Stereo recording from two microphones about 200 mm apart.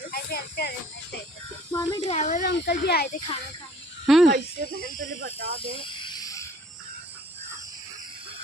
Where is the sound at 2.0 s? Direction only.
35° left (ahead or behind).